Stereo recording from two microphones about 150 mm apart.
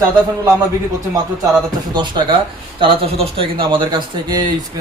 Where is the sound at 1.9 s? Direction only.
30° right (ahead or behind).